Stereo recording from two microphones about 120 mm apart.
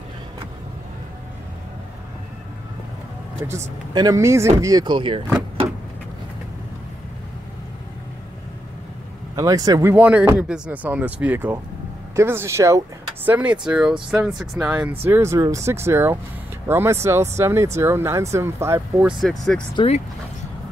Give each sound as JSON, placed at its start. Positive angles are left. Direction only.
{"t": 3.9, "sound": "speech", "side_deg": -30}
{"t": 9.3, "sound": "speech", "side_deg": -30}
{"t": 9.8, "sound": "speech", "side_deg": -10}
{"t": 14.9, "sound": "speech", "side_deg": -20}
{"t": 19.0, "sound": "speech", "side_deg": 0}